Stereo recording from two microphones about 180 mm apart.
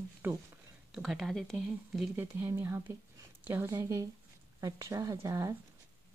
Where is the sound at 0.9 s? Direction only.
Centre (ahead or behind).